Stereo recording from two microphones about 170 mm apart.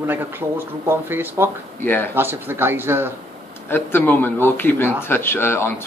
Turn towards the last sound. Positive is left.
turn(degrees=15)  # may be behind; listen again after turning